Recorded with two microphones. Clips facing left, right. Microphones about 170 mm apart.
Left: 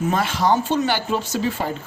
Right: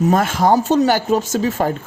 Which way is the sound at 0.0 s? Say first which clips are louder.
Right 5 dB; 45° right (ahead or behind).